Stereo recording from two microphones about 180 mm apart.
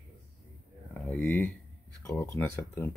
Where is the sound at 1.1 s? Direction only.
10° left (ahead or behind).